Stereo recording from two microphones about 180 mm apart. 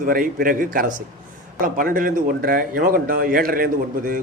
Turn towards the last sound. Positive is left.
turn(degrees=-50)  # may be behind; listen again after turning